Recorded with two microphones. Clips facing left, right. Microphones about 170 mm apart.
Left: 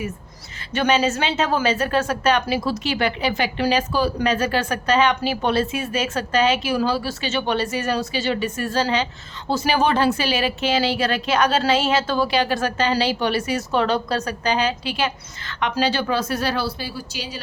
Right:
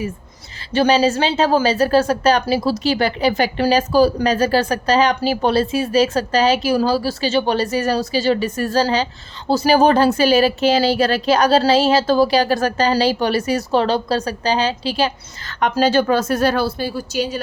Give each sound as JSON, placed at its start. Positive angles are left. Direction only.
{"t": 0.7, "sound": "speech", "side_deg": -35}